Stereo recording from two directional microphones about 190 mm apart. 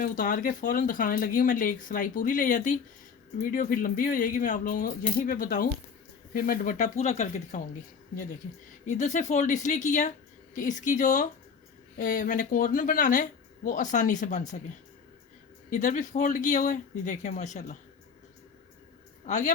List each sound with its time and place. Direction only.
0.0 s speech: 45° left (ahead or behind)
15.7 s speech: 40° left (ahead or behind)
19.2 s a woman's voice: 40° left (ahead or behind)